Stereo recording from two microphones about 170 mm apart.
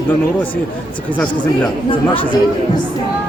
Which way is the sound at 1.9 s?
30° left (ahead or behind).